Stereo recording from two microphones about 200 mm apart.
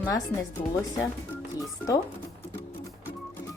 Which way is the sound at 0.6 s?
45° left (ahead or behind).